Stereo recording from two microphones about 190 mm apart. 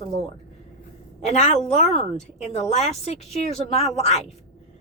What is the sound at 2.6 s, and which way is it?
A woman's voice, 35° left (ahead or behind).